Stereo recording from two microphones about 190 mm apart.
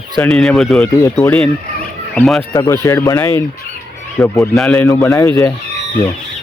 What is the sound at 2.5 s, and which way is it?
Speech, 15° left (ahead or behind).